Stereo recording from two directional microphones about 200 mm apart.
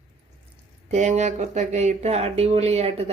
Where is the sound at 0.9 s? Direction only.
35° right (ahead or behind).